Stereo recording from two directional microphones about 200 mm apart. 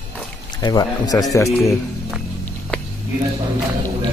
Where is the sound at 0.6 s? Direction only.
20° left (ahead or behind).